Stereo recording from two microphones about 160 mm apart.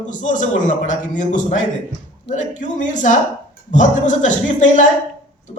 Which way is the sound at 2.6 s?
50° left (ahead or behind).